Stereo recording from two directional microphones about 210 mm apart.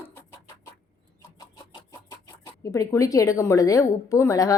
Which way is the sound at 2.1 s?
15° left (ahead or behind).